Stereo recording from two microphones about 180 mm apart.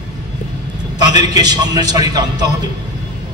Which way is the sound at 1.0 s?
20° right (ahead or behind).